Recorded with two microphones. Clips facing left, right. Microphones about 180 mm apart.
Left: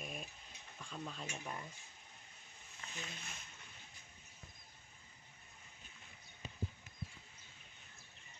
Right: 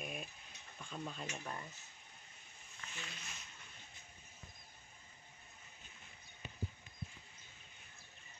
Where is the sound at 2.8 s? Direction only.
25° left (ahead or behind).